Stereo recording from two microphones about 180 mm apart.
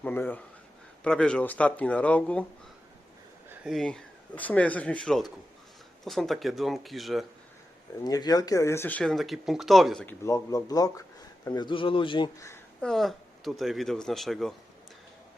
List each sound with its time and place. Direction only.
0.0 s speech: 10° left (ahead or behind)
3.5 s speech: 5° right (ahead or behind)
8.0 s speech: 20° left (ahead or behind); by 10.2 s 5° left (ahead or behind)
10.2 s a man's voice: 20° left (ahead or behind)
12.8 s speech: centre (ahead or behind)